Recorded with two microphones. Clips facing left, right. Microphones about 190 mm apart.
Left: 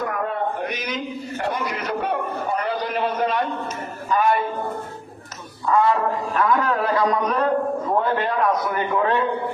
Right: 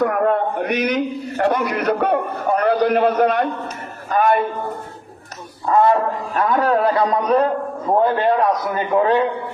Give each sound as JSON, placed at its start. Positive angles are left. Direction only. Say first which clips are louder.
{"t": 0.0, "sound": "a man's voice", "louder": "right 7 dB", "side_deg": -55}
{"t": 4.1, "sound": "music", "louder": "right 3 dB", "side_deg": -55}
{"t": 5.6, "sound": "speech", "louder": "right 4 dB", "side_deg": -40}
{"t": 6.3, "sound": "a man's voice", "louder": "right 4 dB", "side_deg": -30}